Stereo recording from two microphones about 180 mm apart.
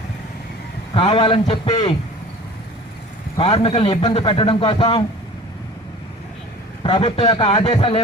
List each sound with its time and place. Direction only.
0.9 s a man's voice: 25° left (ahead or behind)
3.3 s a man's voice: 30° left (ahead or behind)
6.8 s a man's voice: 30° left (ahead or behind)